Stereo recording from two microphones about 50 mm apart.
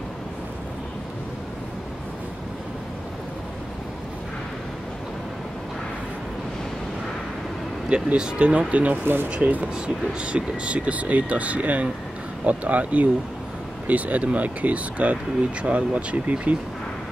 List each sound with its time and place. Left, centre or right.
7.9 s speech: centre
9.0 s speech: right
9.3 s speech: right